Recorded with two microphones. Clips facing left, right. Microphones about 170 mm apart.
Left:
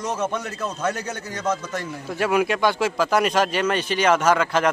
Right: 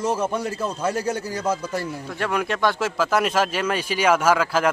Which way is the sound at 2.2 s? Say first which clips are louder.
Left 3 dB; 5° left (ahead or behind).